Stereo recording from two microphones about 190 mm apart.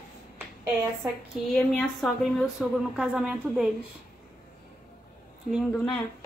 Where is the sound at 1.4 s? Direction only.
Centre (ahead or behind).